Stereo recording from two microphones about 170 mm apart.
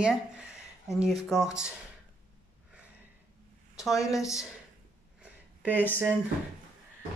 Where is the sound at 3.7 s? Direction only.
Centre (ahead or behind).